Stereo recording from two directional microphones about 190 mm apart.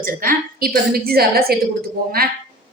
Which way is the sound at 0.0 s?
50° right (ahead or behind).